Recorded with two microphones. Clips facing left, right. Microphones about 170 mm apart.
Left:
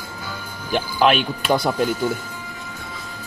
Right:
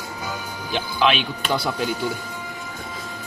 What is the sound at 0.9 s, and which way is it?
Speech, 45° left (ahead or behind).